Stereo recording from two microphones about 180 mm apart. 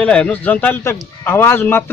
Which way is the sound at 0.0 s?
5° left (ahead or behind).